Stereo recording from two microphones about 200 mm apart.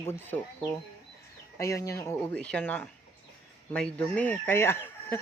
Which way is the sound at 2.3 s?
5° left (ahead or behind).